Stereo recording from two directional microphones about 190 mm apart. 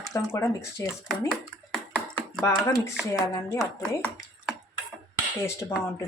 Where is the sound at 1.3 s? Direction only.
5° left (ahead or behind).